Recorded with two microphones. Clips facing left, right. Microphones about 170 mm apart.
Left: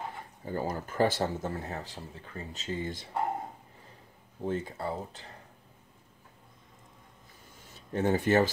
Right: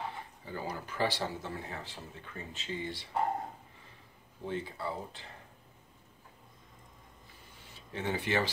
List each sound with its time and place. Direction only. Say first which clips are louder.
0.5 s speech: left 6 dB; 45° left (ahead or behind)
3.2 s a sound: even; 5° left (ahead or behind)
4.5 s speech: left 4 dB; 45° left (ahead or behind)
7.7 s speech: left 8 dB; 45° left (ahead or behind)